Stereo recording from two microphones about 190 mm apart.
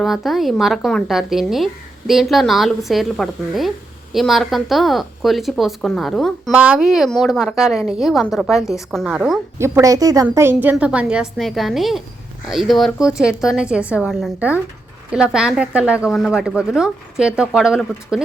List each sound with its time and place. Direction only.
0.0 s a woman's voice: centre (ahead or behind)